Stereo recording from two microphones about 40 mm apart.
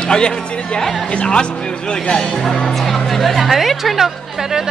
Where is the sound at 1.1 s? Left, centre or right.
Left.